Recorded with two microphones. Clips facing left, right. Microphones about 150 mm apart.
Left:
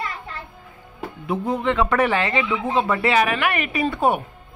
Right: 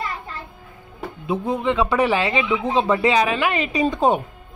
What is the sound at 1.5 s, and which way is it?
Speech, 15° right (ahead or behind).